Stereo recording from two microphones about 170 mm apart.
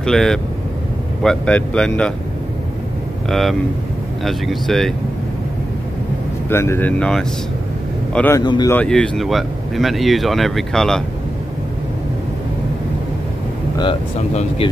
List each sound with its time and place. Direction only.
0.0 s speech: 5° left (ahead or behind)
3.3 s speech: centre (ahead or behind)
6.5 s speech: 15° left (ahead or behind)
8.4 s speech: 25° left (ahead or behind)
8.7 s speech: 5° left (ahead or behind)